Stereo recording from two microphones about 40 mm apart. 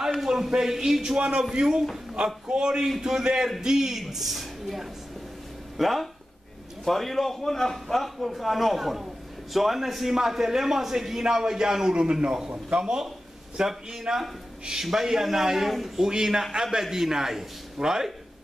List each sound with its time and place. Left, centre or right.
0.3 s a man's voice: centre
11.9 s a man's voice: right